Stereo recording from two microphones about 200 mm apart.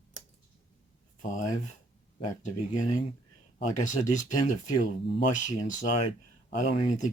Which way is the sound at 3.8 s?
40° left (ahead or behind).